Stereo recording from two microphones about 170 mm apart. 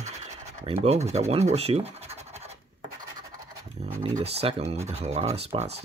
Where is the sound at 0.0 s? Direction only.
40° right (ahead or behind).